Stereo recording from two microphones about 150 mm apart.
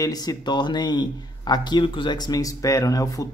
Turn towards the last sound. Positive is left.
turn(degrees=25)  # may be behind; listen again after turning